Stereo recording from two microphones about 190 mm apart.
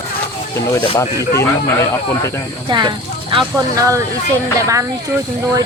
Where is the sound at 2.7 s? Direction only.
25° right (ahead or behind).